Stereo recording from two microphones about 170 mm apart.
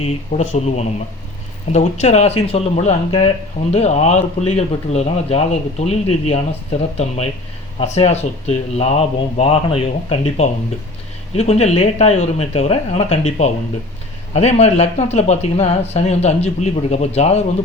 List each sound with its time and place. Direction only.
0.0 s speech: 40° left (ahead or behind)